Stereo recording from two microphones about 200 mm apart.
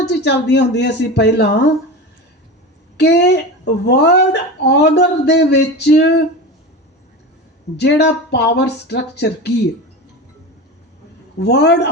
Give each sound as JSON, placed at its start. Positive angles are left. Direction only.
{"t": 0.0, "sound": "a woman's voice", "side_deg": 60}
{"t": 3.0, "sound": "a woman's voice", "side_deg": 55}
{"t": 7.8, "sound": "a woman's voice", "side_deg": 60}
{"t": 11.3, "sound": "a woman's voice", "side_deg": 55}